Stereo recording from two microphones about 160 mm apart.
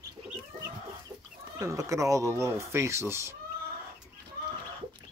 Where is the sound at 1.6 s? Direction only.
20° right (ahead or behind).